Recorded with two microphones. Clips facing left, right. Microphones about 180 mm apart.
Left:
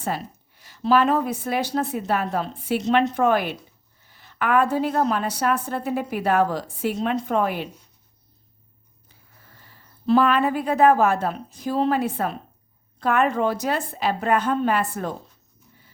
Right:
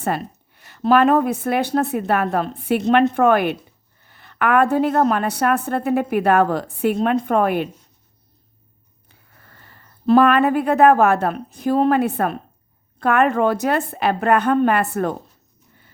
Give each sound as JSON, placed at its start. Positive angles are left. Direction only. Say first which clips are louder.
{"t": 0.0, "sound": "a woman's voice", "louder": "right 5 dB", "side_deg": -60}
{"t": 9.0, "sound": "a woman's voice", "louder": "right 2 dB", "side_deg": -60}